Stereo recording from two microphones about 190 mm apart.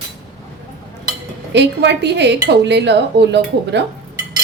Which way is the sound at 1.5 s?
65° right (ahead or behind).